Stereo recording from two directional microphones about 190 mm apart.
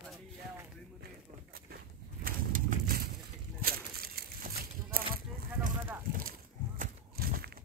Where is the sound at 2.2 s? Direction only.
50° right (ahead or behind).